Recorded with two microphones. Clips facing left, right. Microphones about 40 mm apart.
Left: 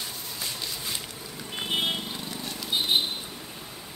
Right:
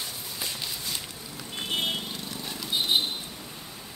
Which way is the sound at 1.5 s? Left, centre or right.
Centre.